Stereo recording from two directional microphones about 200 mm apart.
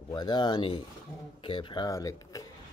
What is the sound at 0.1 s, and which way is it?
Speech, 20° left (ahead or behind).